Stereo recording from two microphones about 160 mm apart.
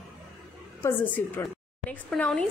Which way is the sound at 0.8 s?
15° left (ahead or behind).